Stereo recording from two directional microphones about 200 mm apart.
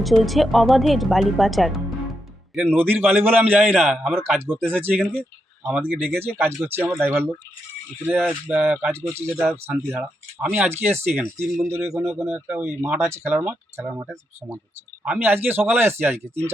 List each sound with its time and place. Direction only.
0.0 s speech: centre (ahead or behind)